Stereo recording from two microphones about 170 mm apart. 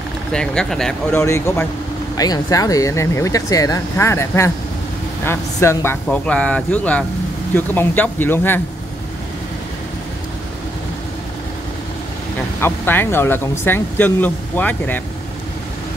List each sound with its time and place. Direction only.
0.3 s speech: 5° left (ahead or behind)
1.2 s speech: 15° left (ahead or behind)
12.5 s speech: 15° left (ahead or behind)